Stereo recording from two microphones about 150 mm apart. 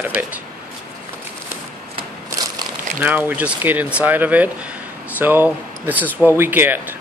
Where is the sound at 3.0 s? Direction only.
10° right (ahead or behind).